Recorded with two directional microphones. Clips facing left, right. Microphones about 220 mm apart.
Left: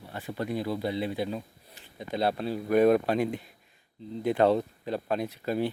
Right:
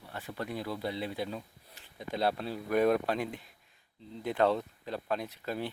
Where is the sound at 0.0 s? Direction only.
10° left (ahead or behind).